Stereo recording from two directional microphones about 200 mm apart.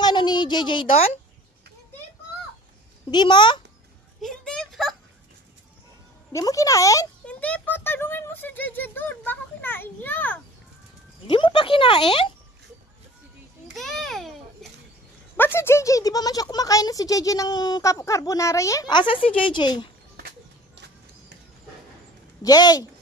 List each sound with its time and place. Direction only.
0.0 s a sound: 20° left (ahead or behind)
3.1 s speech: 20° left (ahead or behind)
4.2 s a sound: 5° left (ahead or behind)
6.3 s speech: 15° left (ahead or behind)
11.2 s speech: 25° left (ahead or behind)
13.7 s a child's voice: centre (ahead or behind)
15.3 s speech: 10° left (ahead or behind)
20.2 s music: 50° right (ahead or behind)
22.4 s speech: 20° left (ahead or behind)